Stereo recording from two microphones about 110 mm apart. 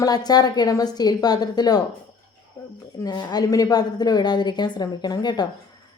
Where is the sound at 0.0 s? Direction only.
35° left (ahead or behind).